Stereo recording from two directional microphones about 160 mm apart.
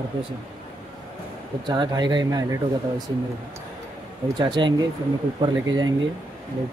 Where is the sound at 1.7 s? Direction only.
25° right (ahead or behind).